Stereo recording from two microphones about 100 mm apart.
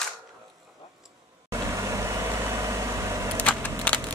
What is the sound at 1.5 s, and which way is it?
Vehicle, 30° right (ahead or behind).